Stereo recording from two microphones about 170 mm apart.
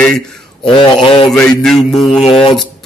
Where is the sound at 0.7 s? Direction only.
30° left (ahead or behind).